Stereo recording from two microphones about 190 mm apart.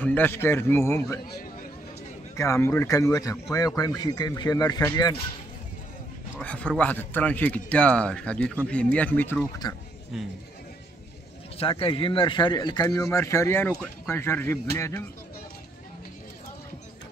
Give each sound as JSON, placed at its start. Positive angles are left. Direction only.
{"t": 0.0, "sound": "speech", "side_deg": 10}
{"t": 2.3, "sound": "speech", "side_deg": 15}
{"t": 6.4, "sound": "speech", "side_deg": 5}
{"t": 10.1, "sound": "speech", "side_deg": 0}
{"t": 11.5, "sound": "speech", "side_deg": 30}